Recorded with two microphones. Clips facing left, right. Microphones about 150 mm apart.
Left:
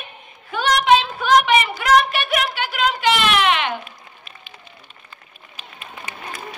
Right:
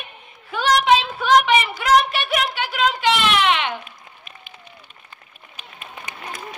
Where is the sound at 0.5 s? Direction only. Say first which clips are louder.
Left 1 dB; centre (ahead or behind).